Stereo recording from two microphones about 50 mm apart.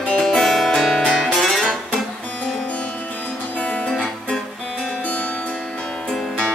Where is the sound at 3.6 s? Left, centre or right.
Left.